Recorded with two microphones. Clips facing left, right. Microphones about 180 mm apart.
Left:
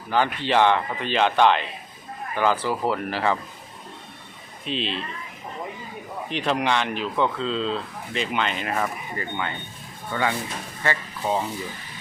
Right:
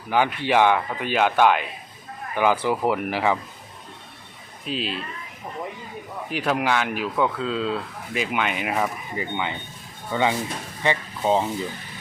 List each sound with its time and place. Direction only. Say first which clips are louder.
0.1 s speech: right 1 dB; 10° right (ahead or behind)
4.6 s speech: even; 5° right (ahead or behind)
6.3 s speech: right 1 dB; 5° right (ahead or behind); by 11.4 s 25° right (ahead or behind)